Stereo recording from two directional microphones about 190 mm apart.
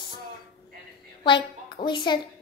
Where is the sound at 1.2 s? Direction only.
25° left (ahead or behind).